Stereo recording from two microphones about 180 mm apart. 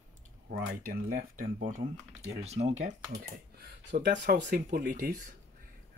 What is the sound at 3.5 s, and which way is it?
Speech, 65° right (ahead or behind).